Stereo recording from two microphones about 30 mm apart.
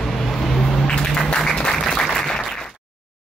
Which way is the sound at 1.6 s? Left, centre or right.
Centre.